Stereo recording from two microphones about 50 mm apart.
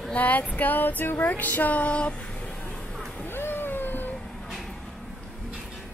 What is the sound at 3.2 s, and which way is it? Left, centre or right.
Vehicle, left.